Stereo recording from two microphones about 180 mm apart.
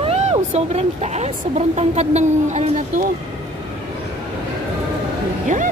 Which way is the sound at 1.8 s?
40° right (ahead or behind).